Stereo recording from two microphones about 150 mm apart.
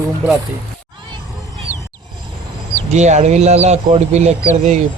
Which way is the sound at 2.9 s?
50° right (ahead or behind).